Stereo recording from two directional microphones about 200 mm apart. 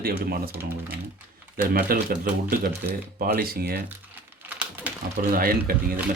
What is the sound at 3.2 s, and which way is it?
Speech, 45° right (ahead or behind).